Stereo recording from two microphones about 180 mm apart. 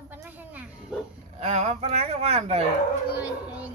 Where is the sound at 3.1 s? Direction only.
5° right (ahead or behind).